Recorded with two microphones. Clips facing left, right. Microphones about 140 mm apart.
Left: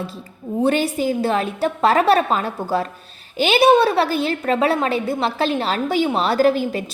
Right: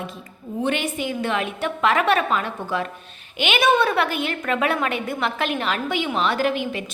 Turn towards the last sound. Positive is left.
turn(degrees=35)  # may be behind; listen again after turning